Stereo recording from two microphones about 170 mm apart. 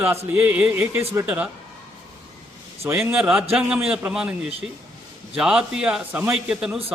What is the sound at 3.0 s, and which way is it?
A man's voice, 5° right (ahead or behind).